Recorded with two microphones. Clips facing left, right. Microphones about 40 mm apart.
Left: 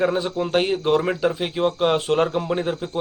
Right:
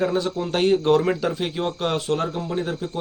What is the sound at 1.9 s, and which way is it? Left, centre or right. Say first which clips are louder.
Speech: left 4 dB; left.